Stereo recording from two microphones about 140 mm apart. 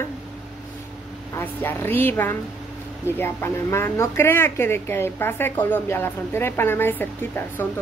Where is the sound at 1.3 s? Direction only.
15° left (ahead or behind).